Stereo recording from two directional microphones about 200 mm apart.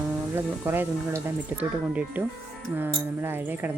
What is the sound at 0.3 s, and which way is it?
Speech, 10° right (ahead or behind).